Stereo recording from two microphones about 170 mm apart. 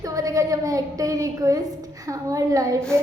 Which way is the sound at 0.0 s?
20° right (ahead or behind).